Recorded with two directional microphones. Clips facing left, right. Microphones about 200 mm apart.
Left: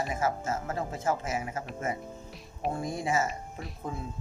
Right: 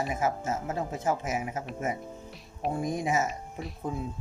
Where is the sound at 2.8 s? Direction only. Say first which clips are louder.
Right 2 dB; 15° right (ahead or behind).